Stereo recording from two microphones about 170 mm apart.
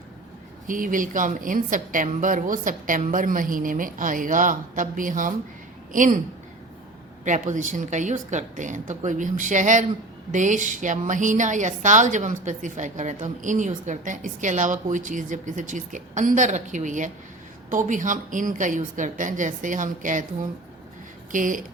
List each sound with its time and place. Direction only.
0.7 s a woman's voice: 55° right (ahead or behind)
7.3 s a woman's voice: 45° right (ahead or behind)
21.3 s a woman's voice: 50° right (ahead or behind)